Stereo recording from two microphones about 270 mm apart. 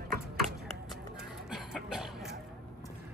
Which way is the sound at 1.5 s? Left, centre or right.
Centre.